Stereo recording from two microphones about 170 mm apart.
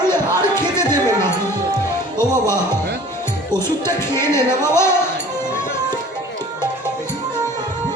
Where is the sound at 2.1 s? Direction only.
15° left (ahead or behind).